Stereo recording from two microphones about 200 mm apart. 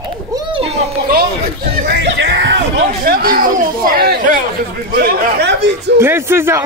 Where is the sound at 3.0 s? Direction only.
45° right (ahead or behind).